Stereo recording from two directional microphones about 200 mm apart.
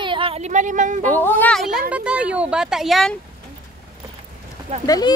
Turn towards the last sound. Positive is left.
turn(degrees=20)  # may be behind; listen again after turning